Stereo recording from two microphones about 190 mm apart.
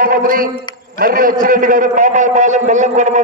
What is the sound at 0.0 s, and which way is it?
A man's voice, 50° right (ahead or behind).